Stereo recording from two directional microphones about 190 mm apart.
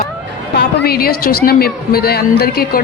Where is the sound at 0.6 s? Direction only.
55° left (ahead or behind).